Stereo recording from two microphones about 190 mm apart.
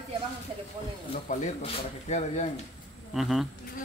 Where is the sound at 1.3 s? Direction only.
40° left (ahead or behind).